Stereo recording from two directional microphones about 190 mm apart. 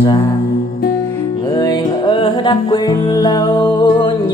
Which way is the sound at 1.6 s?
20° left (ahead or behind).